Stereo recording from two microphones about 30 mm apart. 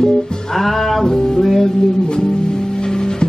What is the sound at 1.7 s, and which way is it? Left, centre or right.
Music, left.